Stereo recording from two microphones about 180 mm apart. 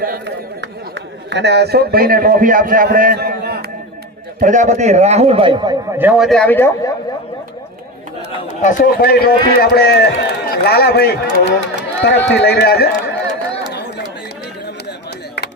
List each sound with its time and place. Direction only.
0.0 s a sound: 60° right (ahead or behind)
4.4 s a man's voice: 45° right (ahead or behind); by 6.0 s 25° right (ahead or behind)
6.0 s speech: 5° right (ahead or behind); by 6.9 s 10° left (ahead or behind)
8.6 s a man's voice: 45° left (ahead or behind)